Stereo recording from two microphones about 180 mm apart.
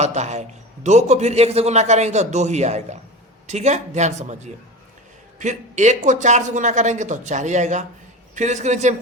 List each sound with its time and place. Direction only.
0.0 s a man's voice: 40° right (ahead or behind)
5.4 s a man's voice: 40° right (ahead or behind)